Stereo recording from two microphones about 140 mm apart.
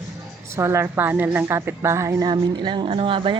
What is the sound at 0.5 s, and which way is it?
A woman's voice, 20° right (ahead or behind).